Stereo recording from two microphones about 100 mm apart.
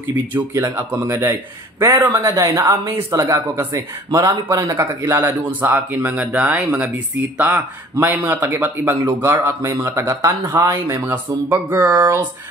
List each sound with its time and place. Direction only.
0.1 s speech: 20° right (ahead or behind)